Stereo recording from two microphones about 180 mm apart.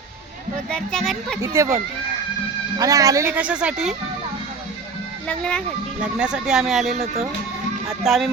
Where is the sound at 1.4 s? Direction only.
15° right (ahead or behind).